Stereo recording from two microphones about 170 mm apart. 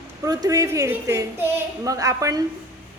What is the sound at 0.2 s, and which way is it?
A woman's voice, 20° right (ahead or behind).